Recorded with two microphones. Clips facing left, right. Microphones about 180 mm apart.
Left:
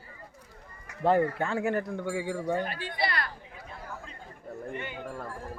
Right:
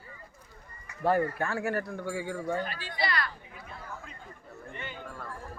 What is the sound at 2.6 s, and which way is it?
Speech, 55° left (ahead or behind).